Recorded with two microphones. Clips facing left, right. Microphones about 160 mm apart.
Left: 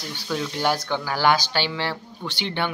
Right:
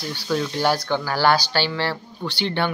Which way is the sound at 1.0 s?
15° left (ahead or behind).